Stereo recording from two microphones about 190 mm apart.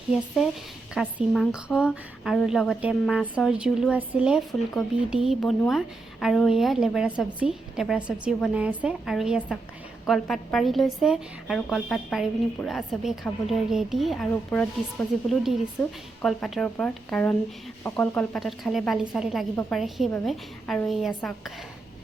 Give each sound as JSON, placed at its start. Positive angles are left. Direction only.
{"t": 0.1, "sound": "a woman's voice", "side_deg": 0}